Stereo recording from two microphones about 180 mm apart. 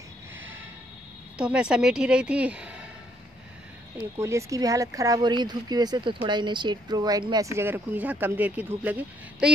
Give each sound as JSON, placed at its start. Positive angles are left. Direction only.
{"t": 1.4, "sound": "a woman's voice", "side_deg": -5}
{"t": 4.2, "sound": "speech", "side_deg": -15}